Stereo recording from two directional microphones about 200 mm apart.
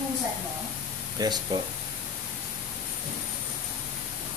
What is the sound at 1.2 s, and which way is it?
Speech, 20° right (ahead or behind).